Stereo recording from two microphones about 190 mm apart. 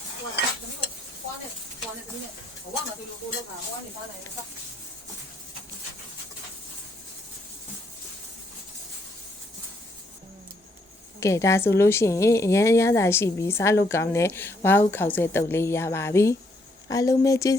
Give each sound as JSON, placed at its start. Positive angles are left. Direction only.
{"t": 11.2, "sound": "a woman's voice", "side_deg": 15}